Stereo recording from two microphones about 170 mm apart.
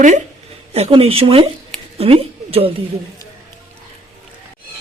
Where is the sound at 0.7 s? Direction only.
35° right (ahead or behind).